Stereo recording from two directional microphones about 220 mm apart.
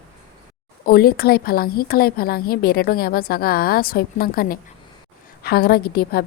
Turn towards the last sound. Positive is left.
turn(degrees=45)  # may be behind; listen again after turning